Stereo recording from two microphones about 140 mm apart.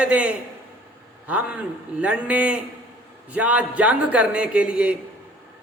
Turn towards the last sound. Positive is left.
turn(degrees=-10)  # may be behind; listen again after turning